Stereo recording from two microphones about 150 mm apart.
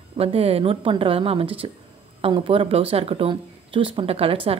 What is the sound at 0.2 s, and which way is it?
A woman's voice, 40° right (ahead or behind).